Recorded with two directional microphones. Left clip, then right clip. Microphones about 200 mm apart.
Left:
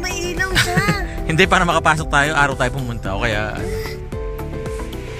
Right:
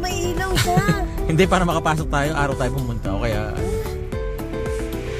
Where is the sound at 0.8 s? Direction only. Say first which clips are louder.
Left 2 dB; 5° right (ahead or behind).